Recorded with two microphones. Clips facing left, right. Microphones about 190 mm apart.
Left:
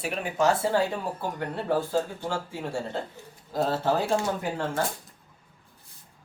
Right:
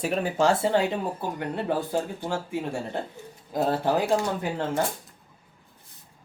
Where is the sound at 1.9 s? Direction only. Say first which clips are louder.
Even; 15° right (ahead or behind).